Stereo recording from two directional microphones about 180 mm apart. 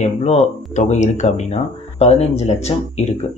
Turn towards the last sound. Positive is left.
turn(degrees=35)  # may be behind; listen again after turning